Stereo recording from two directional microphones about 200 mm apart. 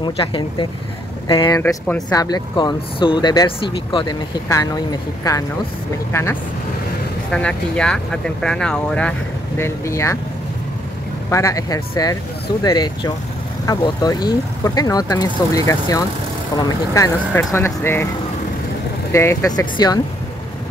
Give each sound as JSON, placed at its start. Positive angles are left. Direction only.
{"t": 0.0, "sound": "speech", "side_deg": 25}
{"t": 1.6, "sound": "speech", "side_deg": 10}
{"t": 2.0, "sound": "speech", "side_deg": 20}
{"t": 7.2, "sound": "speech", "side_deg": 5}
{"t": 11.2, "sound": "speech", "side_deg": 15}
{"t": 19.1, "sound": "speech", "side_deg": 15}